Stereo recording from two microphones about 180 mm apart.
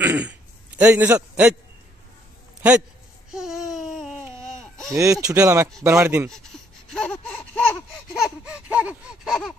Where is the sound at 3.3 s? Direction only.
Centre (ahead or behind).